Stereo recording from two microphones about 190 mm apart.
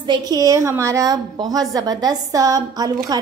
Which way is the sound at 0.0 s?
25° right (ahead or behind).